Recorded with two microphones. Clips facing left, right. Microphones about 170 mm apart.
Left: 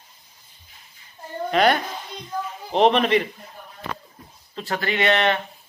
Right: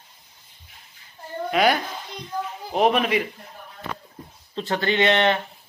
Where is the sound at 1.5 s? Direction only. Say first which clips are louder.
Left 1 dB; 5° right (ahead or behind).